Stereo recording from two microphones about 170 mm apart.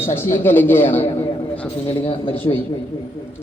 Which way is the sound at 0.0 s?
15° left (ahead or behind).